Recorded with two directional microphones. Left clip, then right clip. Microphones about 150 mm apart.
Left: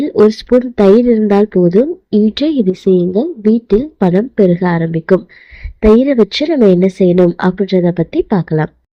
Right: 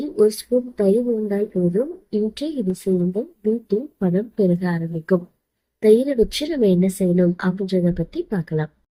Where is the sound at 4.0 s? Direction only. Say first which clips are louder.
Left 10 dB; 60° left (ahead or behind).